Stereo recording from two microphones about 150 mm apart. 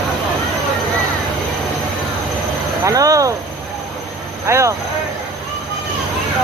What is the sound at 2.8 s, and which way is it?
Speech, 25° right (ahead or behind).